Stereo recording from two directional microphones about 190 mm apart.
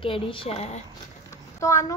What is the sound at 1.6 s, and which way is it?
Speech, 15° left (ahead or behind).